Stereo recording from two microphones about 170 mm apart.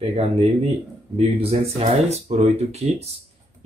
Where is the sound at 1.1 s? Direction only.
35° right (ahead or behind).